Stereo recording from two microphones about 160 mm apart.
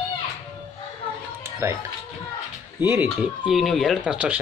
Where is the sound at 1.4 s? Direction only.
15° right (ahead or behind).